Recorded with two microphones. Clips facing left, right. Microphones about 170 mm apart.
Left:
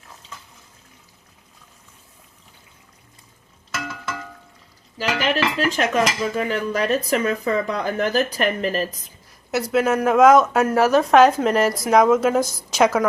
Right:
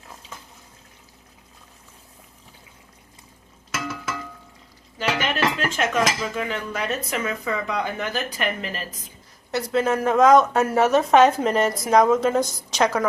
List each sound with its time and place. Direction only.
4.9 s speech: 35° left (ahead or behind)
9.5 s speech: 5° left (ahead or behind)